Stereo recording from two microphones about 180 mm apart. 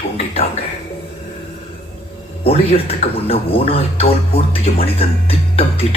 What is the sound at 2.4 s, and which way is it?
Speech, 35° left (ahead or behind).